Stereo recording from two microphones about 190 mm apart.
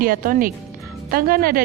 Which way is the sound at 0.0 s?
50° right (ahead or behind).